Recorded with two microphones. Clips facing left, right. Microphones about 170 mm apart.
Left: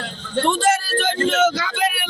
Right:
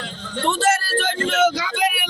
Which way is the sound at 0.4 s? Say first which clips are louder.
Even; 5° right (ahead or behind).